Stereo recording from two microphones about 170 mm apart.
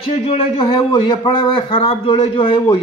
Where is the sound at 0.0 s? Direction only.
35° left (ahead or behind).